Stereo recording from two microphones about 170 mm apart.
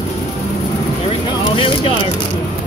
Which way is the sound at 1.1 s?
30° left (ahead or behind).